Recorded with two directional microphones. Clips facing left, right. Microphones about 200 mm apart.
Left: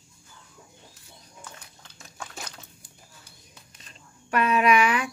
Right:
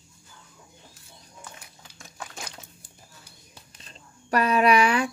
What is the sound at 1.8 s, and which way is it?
Rowboat, 5° right (ahead or behind).